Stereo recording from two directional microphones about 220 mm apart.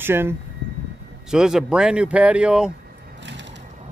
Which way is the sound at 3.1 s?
55° right (ahead or behind).